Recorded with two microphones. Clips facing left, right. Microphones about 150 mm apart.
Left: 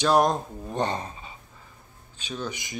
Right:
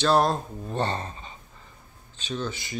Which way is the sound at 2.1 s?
10° left (ahead or behind).